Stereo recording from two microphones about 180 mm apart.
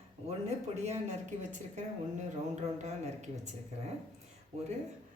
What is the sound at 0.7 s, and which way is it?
Speech, 40° right (ahead or behind).